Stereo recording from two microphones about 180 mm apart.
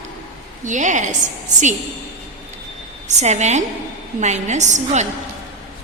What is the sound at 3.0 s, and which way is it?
A woman's voice, 40° right (ahead or behind).